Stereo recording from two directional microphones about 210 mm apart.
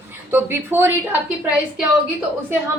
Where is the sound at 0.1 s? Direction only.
10° right (ahead or behind).